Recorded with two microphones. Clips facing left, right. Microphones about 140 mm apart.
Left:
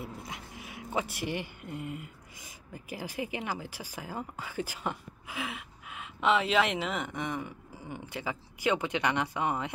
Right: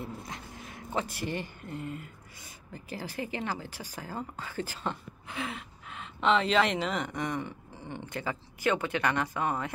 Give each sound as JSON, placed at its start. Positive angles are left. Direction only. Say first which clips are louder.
{"t": 0.0, "sound": "speech", "louder": "right 1 dB", "side_deg": 5}